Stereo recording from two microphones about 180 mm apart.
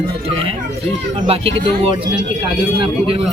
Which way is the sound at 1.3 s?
30° right (ahead or behind).